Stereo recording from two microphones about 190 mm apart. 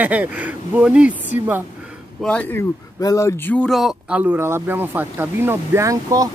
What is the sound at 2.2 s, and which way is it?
Speech, 5° left (ahead or behind).